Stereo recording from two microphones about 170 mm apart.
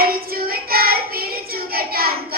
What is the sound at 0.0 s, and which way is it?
Child singing, 60° right (ahead or behind).